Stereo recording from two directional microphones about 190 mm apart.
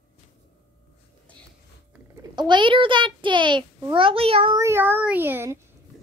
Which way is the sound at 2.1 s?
25° right (ahead or behind).